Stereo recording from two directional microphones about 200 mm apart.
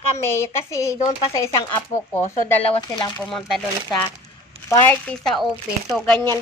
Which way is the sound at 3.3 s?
Centre (ahead or behind).